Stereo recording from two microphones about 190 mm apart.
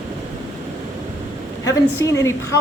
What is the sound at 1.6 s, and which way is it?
Speech, 15° left (ahead or behind).